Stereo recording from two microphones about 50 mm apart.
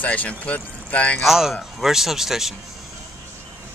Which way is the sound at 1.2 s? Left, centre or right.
Centre.